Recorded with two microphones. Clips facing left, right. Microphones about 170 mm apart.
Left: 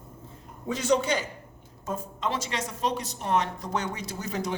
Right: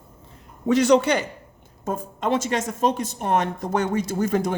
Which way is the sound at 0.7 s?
75° right (ahead or behind).